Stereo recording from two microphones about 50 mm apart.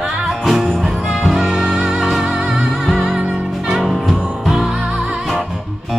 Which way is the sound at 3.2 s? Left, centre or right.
Right.